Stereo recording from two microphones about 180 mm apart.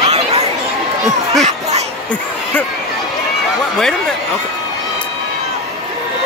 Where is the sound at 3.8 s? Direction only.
5° left (ahead or behind).